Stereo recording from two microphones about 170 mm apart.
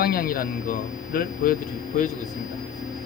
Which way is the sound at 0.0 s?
60° left (ahead or behind).